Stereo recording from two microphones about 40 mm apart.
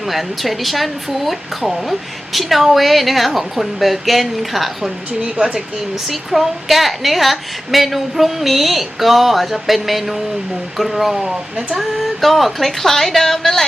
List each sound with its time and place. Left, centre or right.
0.1 s speech: centre
5.2 s speech: right
6.1 s a woman's voice: centre